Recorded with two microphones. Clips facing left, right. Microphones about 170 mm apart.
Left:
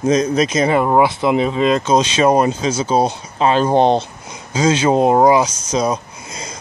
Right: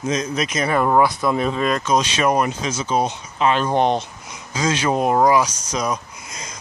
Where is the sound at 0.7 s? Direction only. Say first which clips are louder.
Left 3 dB; 20° left (ahead or behind).